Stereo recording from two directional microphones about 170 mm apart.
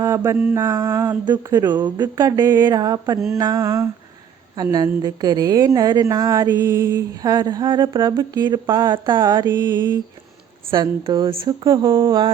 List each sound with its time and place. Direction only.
0.0 s a woman's voice: 15° right (ahead or behind)
9.5 s mantra: 15° right (ahead or behind)
10.7 s a woman's voice: 30° right (ahead or behind)